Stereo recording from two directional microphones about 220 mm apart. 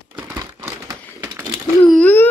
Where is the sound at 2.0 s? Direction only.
5° left (ahead or behind).